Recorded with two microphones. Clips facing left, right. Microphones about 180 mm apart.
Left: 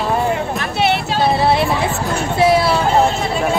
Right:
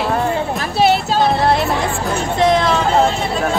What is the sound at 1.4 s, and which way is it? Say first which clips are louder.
Speech: even; 5° left (ahead or behind).